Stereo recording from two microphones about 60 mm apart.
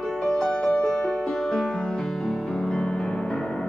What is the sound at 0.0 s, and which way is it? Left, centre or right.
Music, centre.